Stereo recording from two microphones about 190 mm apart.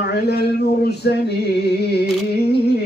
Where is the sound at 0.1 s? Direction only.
60° left (ahead or behind).